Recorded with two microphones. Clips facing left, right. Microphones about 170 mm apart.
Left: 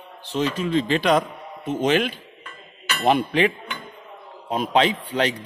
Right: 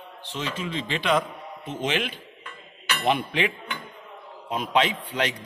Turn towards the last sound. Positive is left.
turn(degrees=35)  # may be behind; listen again after turning